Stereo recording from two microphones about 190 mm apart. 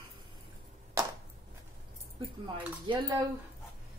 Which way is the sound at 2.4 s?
25° right (ahead or behind).